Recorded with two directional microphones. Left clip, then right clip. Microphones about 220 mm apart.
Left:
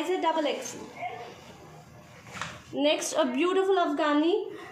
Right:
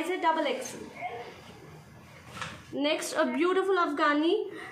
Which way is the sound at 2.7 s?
10° right (ahead or behind).